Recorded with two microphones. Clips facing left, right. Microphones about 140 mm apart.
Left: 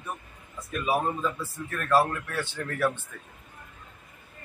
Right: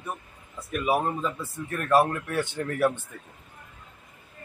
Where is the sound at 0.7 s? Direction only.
20° right (ahead or behind).